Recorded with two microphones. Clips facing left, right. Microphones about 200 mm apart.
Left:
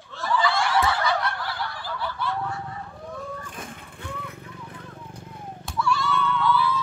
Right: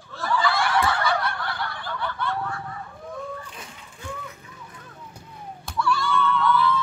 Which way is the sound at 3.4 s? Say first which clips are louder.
Left 3 dB; 50° left (ahead or behind).